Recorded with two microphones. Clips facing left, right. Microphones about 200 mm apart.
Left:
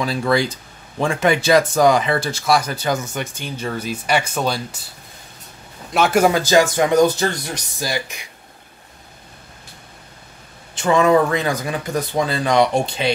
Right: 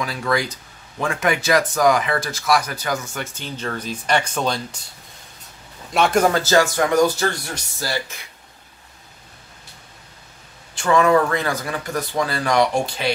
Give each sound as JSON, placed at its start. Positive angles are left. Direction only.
{"t": 0.0, "sound": "speech", "side_deg": 30}
{"t": 5.9, "sound": "speech", "side_deg": 5}
{"t": 10.7, "sound": "speech", "side_deg": 20}